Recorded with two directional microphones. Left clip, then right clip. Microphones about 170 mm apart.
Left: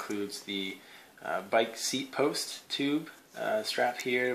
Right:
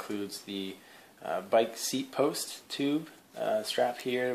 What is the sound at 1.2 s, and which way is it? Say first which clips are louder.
Speech: right 1 dB; 30° right (ahead or behind).